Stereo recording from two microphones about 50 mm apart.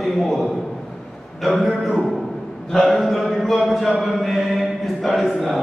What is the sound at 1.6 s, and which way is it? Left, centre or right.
A man's voice, centre.